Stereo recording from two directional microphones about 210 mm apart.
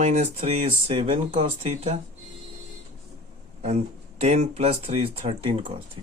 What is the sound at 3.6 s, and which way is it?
Speech, 30° right (ahead or behind).